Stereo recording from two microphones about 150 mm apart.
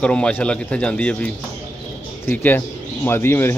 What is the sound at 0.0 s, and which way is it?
A man's voice, 10° left (ahead or behind).